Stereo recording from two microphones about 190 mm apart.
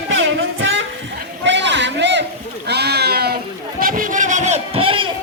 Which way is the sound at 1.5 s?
70° right (ahead or behind).